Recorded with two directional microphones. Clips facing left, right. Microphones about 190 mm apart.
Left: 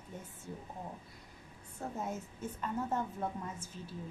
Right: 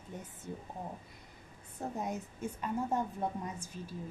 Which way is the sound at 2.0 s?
15° right (ahead or behind).